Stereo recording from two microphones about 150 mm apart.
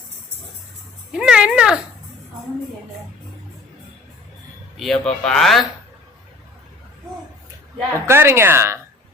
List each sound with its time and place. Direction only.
1.1 s cat: 5° right (ahead or behind)
4.8 s speech: 5° left (ahead or behind)
7.9 s a woman's voice: 15° right (ahead or behind)